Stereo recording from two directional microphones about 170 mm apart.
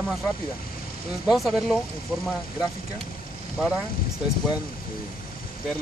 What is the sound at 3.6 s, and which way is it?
Speech, 5° right (ahead or behind).